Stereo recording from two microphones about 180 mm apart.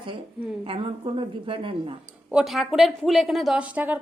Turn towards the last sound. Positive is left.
turn(degrees=-10)  # may be behind; listen again after turning